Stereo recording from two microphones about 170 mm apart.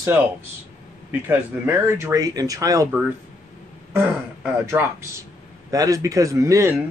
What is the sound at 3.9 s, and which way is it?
A man's voice, 10° right (ahead or behind).